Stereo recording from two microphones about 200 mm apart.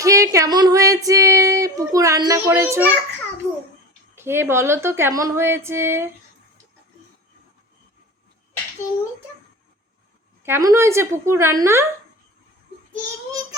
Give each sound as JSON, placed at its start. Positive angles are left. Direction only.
{"t": 0.0, "sound": "female singing", "side_deg": -15}
{"t": 4.1, "sound": "speech", "side_deg": -10}
{"t": 10.4, "sound": "speech", "side_deg": -15}